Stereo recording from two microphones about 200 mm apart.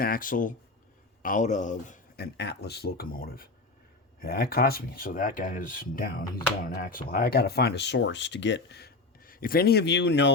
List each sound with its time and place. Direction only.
0.0 s speech: 45° left (ahead or behind); by 10.3 s 60° left (ahead or behind)